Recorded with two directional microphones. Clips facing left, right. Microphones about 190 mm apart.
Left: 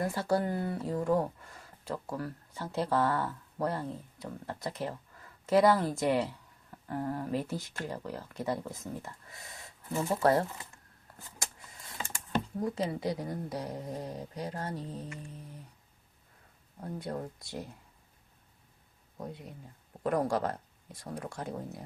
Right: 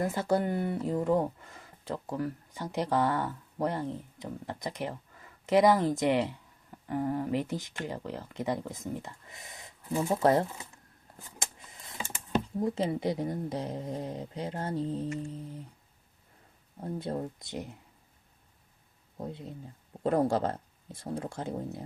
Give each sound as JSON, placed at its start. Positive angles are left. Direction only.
{"t": 0.0, "sound": "speech", "side_deg": -20}
{"t": 16.8, "sound": "speech", "side_deg": -25}
{"t": 19.1, "sound": "speech", "side_deg": -25}